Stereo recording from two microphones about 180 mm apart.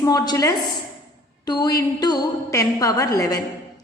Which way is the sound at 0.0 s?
20° left (ahead or behind).